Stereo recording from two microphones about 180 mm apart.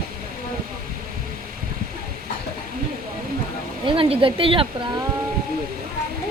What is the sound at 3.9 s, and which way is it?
Speech, 30° right (ahead or behind).